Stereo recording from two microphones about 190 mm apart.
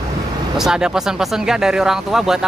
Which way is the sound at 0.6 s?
5° right (ahead or behind).